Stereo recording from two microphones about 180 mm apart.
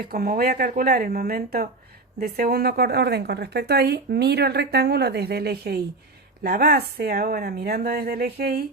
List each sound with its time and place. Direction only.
0.1 s a woman's voice: 55° right (ahead or behind)